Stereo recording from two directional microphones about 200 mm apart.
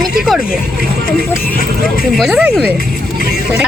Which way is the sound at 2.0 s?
Centre (ahead or behind).